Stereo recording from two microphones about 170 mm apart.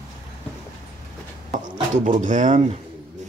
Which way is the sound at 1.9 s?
50° right (ahead or behind).